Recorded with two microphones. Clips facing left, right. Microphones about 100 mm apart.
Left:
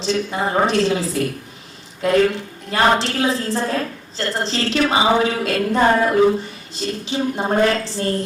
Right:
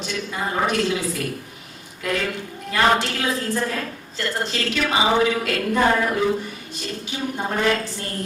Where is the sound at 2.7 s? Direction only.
30° left (ahead or behind).